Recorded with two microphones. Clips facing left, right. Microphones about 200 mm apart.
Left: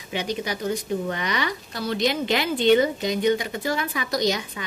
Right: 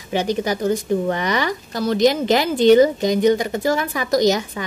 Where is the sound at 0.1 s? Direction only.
40° right (ahead or behind).